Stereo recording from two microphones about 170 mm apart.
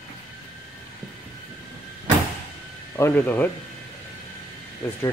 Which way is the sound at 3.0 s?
10° left (ahead or behind).